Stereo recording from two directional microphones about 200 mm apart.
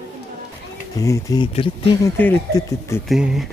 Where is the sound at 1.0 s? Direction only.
15° left (ahead or behind).